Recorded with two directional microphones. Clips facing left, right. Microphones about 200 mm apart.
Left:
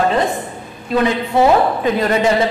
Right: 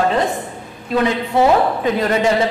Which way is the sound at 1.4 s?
20° left (ahead or behind).